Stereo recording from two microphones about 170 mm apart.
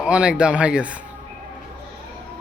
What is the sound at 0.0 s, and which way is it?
Speech, 5° right (ahead or behind).